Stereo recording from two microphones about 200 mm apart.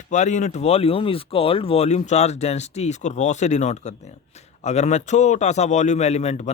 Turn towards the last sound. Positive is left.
turn(degrees=35)  # may be behind; listen again after turning